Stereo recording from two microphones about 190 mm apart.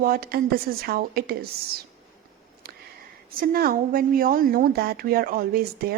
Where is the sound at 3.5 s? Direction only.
50° right (ahead or behind).